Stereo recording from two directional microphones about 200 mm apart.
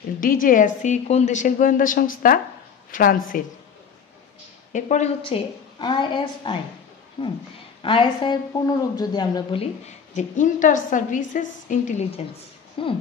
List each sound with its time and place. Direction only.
0.2 s a woman's voice: 45° left (ahead or behind)
4.7 s a woman's voice: 35° left (ahead or behind)